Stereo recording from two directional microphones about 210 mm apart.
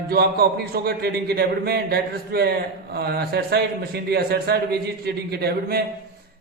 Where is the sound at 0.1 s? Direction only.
50° right (ahead or behind).